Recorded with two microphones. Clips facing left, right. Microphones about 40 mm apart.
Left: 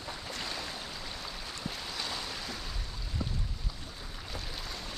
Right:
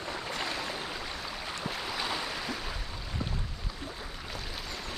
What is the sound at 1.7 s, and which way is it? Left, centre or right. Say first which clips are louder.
Waves: right 4 dB; centre.